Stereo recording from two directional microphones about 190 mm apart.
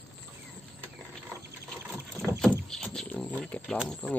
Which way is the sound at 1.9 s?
Centre (ahead or behind).